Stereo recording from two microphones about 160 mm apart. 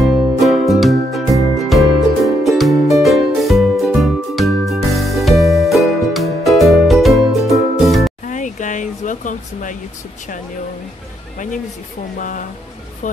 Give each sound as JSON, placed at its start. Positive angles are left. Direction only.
{"t": 0.0, "sound": "music", "side_deg": 0}
{"t": 8.3, "sound": "a sound", "side_deg": 50}
{"t": 11.3, "sound": "speech", "side_deg": 50}